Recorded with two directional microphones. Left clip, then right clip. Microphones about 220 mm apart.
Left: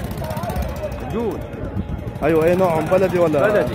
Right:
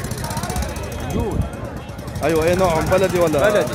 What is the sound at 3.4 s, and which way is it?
Speech, 30° left (ahead or behind).